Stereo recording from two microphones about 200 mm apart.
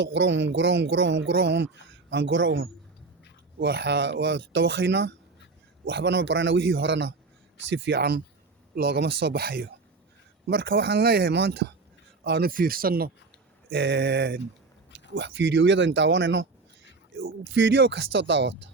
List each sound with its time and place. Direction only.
0.0 s speech: 65° right (ahead or behind)
3.6 s speech: 55° right (ahead or behind)